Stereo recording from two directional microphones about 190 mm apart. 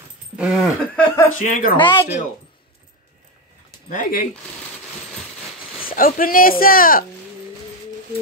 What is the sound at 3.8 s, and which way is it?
Speech, 45° left (ahead or behind).